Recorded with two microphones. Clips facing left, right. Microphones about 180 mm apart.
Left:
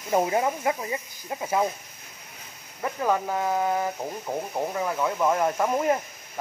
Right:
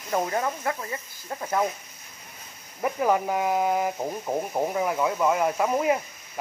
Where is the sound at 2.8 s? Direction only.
10° right (ahead or behind).